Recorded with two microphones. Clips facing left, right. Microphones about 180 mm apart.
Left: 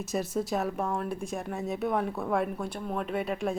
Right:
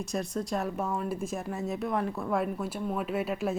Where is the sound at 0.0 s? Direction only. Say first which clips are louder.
Left 2 dB; 5° left (ahead or behind).